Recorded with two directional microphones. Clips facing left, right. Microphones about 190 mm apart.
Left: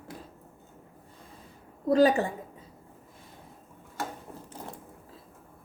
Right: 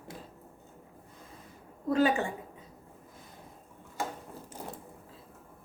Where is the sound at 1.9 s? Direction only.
35° left (ahead or behind).